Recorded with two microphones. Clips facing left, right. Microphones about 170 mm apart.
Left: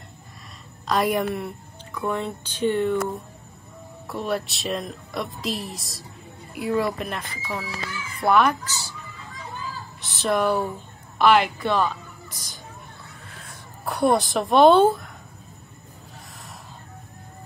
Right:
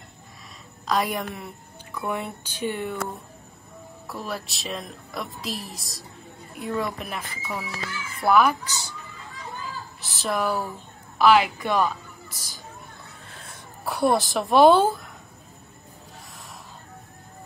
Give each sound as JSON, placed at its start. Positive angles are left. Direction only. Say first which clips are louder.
{"t": 0.8, "sound": "a woman's voice", "louder": "left 3 dB", "side_deg": 0}
{"t": 2.0, "sound": "speech", "louder": "left 3 dB", "side_deg": -10}
{"t": 4.1, "sound": "a woman's voice", "louder": "left 6 dB", "side_deg": 0}
{"t": 8.6, "sound": "speech", "louder": "even", "side_deg": -15}
{"t": 10.0, "sound": "a woman's voice", "louder": "left 4 dB", "side_deg": 0}
{"t": 13.8, "sound": "a woman's voice", "louder": "left 1 dB", "side_deg": 0}